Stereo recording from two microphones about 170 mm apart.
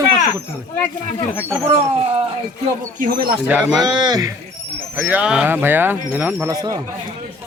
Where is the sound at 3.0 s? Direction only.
60° right (ahead or behind).